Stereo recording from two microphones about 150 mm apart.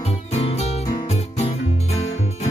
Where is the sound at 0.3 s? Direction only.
45° left (ahead or behind).